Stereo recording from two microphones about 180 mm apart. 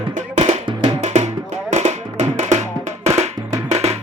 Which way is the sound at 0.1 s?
40° right (ahead or behind).